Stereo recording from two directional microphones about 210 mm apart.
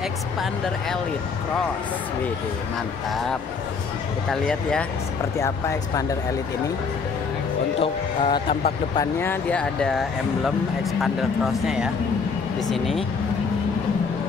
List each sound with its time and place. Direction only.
4.3 s speech: 5° left (ahead or behind)
5.4 s speech: 15° left (ahead or behind)
7.8 s speech: 25° left (ahead or behind)
8.9 s speech: 10° left (ahead or behind)
11.6 s speech: 5° right (ahead or behind)